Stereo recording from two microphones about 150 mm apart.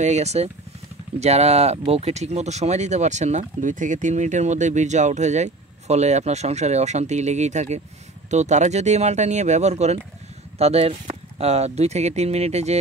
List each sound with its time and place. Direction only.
0.0 s speech: 50° right (ahead or behind)